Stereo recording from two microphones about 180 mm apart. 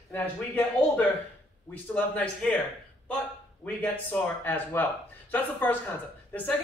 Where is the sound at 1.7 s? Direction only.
5° left (ahead or behind).